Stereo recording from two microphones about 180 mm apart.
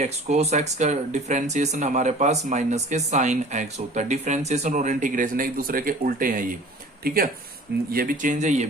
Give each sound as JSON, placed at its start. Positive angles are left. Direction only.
{"t": 0.0, "sound": "speech", "side_deg": -40}